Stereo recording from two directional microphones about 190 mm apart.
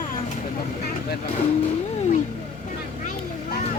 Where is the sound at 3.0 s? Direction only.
50° left (ahead or behind).